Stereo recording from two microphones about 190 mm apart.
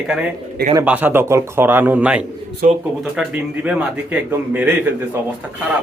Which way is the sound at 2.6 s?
45° right (ahead or behind).